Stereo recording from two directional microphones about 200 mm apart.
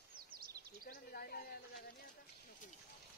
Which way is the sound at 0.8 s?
50° left (ahead or behind).